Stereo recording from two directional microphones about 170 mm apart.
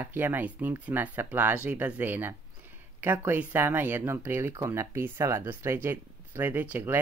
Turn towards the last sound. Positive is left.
turn(degrees=-10)  # may be behind; listen again after turning